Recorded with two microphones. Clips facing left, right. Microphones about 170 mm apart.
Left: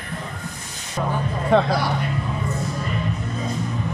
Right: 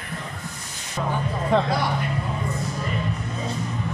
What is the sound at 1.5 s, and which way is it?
Speech, 65° left (ahead or behind).